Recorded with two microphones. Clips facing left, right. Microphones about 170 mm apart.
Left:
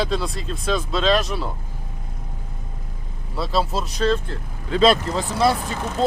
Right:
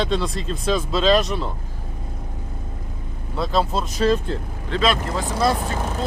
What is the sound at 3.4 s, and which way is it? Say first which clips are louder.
Speech: right 1 dB; 5° left (ahead or behind).